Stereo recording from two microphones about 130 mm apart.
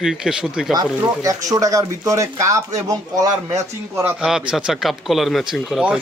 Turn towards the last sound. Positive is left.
turn(degrees=-5)  # may be behind; listen again after turning